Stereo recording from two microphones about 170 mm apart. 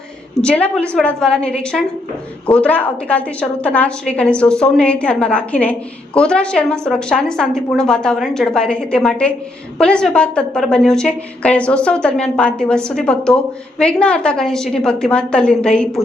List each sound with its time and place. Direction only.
0.4 s a woman's voice: 5° left (ahead or behind)